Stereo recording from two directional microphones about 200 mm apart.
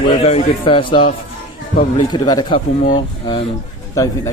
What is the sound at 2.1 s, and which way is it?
Speech, 20° left (ahead or behind).